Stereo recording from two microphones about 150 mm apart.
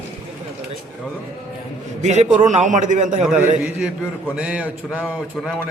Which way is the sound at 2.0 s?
50° right (ahead or behind).